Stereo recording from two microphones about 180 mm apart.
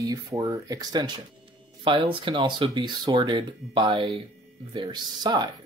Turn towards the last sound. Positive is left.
turn(degrees=-25)  # may be behind; listen again after turning